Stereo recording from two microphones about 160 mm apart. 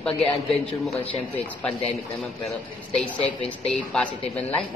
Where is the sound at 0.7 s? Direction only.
40° left (ahead or behind).